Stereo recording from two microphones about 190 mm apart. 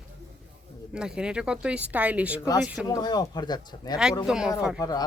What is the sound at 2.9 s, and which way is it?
Speech, 20° left (ahead or behind).